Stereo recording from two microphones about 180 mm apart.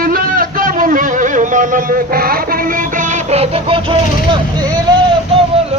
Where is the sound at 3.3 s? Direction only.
35° right (ahead or behind).